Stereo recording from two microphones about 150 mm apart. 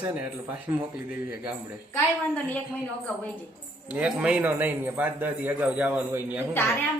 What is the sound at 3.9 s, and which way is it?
Speech, 5° right (ahead or behind).